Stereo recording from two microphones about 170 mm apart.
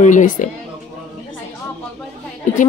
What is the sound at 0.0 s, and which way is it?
Speech, 50° left (ahead or behind).